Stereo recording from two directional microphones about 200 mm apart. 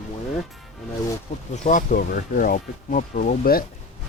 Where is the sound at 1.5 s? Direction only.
40° left (ahead or behind).